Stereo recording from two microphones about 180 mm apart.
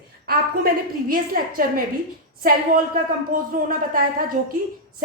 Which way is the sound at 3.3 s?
50° right (ahead or behind).